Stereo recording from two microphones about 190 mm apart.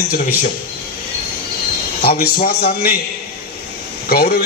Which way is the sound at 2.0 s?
55° left (ahead or behind).